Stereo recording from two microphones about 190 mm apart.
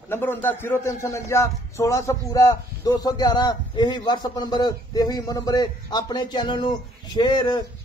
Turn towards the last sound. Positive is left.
turn(degrees=20)  # may be behind; listen again after turning